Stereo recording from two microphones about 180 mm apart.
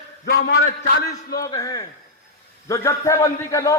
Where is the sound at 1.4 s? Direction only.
20° left (ahead or behind).